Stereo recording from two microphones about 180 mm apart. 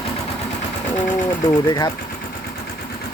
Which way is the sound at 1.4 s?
25° left (ahead or behind).